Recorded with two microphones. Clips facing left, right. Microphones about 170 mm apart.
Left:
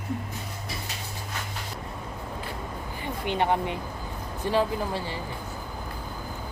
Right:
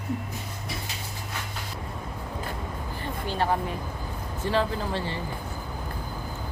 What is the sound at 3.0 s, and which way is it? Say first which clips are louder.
Speech: left 2 dB; 20° left (ahead or behind).